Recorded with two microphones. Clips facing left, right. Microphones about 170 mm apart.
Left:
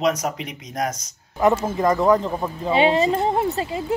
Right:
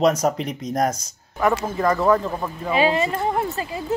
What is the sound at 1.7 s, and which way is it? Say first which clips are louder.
A woman's voice: left 1 dB; 15° left (ahead or behind).